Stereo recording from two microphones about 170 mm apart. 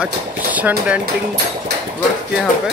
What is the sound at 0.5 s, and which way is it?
Speech, 10° right (ahead or behind).